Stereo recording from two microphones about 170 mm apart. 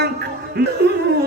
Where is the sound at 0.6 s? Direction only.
70° right (ahead or behind).